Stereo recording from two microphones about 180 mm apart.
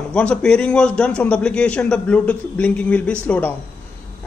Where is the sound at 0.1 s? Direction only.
5° left (ahead or behind).